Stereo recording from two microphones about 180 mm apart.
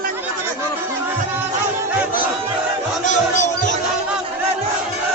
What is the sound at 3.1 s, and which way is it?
Music, 45° left (ahead or behind).